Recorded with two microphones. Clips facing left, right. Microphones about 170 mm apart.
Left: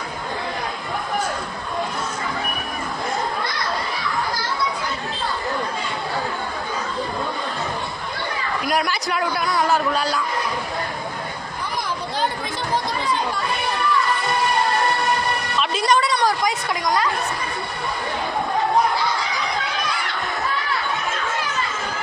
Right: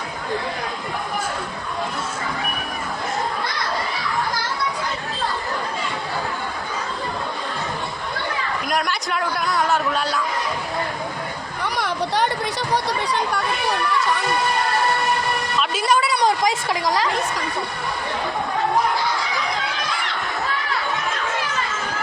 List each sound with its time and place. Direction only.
8.6 s a man's voice: centre (ahead or behind)
11.6 s chatter: 70° right (ahead or behind)
15.5 s a sound: 5° right (ahead or behind)
16.2 s speech: 25° right (ahead or behind)